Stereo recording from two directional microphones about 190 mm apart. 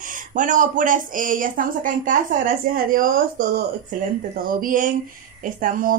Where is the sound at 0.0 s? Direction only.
45° right (ahead or behind).